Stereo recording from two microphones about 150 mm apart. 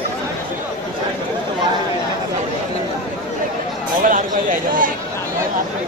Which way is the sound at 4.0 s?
65° right (ahead or behind).